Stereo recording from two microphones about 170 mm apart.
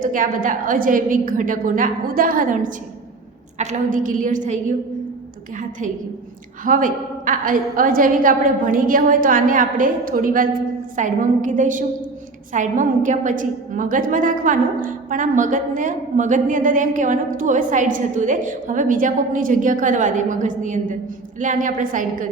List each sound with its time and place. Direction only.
0.0 s a woman's voice: 55° right (ahead or behind)
6.7 s a woman's voice: 55° right (ahead or behind)